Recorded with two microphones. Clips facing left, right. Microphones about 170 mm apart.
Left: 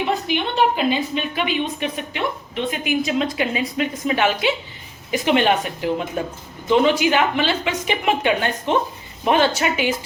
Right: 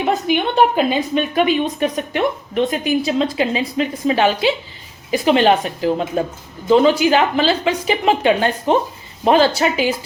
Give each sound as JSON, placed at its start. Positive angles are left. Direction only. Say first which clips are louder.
{"t": 0.3, "sound": "a woman's voice", "louder": "right 6 dB", "side_deg": -45}